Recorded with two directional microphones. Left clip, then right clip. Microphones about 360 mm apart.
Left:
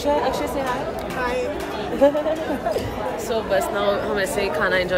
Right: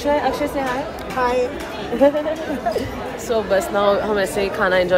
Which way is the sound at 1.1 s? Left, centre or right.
Centre.